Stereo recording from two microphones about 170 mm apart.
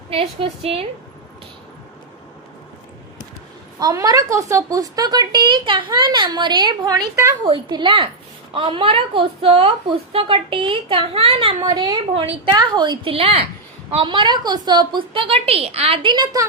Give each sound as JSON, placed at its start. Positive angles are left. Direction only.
{"t": 0.1, "sound": "a woman's voice", "side_deg": -35}
{"t": 3.8, "sound": "a woman's voice", "side_deg": -20}
{"t": 11.6, "sound": "a woman's voice", "side_deg": -25}